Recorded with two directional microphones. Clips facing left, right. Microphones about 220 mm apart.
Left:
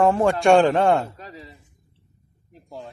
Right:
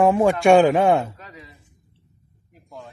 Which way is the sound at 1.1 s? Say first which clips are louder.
Left 3 dB; 30° left (ahead or behind).